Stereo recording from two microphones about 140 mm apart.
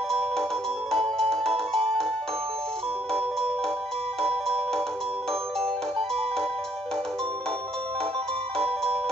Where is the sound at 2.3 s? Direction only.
45° right (ahead or behind).